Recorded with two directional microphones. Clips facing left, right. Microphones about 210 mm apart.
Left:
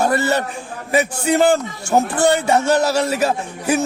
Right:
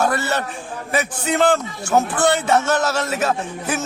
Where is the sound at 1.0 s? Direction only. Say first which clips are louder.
Left 3 dB; 40° left (ahead or behind).